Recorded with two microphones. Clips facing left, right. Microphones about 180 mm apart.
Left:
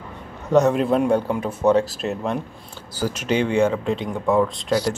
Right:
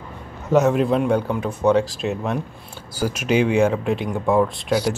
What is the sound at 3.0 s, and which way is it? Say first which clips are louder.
Speech: right 2 dB; 10° right (ahead or behind).